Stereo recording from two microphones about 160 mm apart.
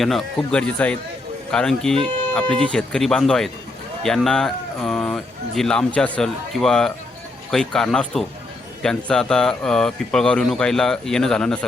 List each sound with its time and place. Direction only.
0.0 s speech: centre (ahead or behind)